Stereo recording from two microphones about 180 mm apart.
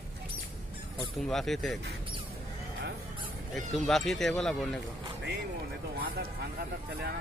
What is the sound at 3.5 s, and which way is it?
Speech, centre (ahead or behind).